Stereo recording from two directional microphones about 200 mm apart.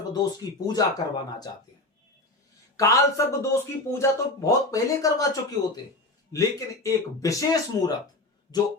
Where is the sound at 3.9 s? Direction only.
15° left (ahead or behind).